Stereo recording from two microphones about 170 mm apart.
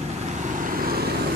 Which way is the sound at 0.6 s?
60° right (ahead or behind).